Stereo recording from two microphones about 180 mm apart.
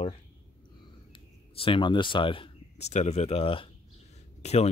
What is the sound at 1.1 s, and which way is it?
Speech, 30° left (ahead or behind).